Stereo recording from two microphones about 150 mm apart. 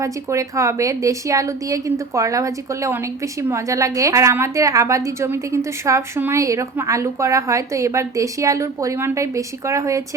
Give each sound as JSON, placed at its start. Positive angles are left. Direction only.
{"t": 0.0, "sound": "a woman's voice", "side_deg": -20}